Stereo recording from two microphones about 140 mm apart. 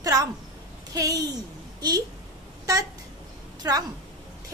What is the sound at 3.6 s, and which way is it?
Speech, 25° right (ahead or behind).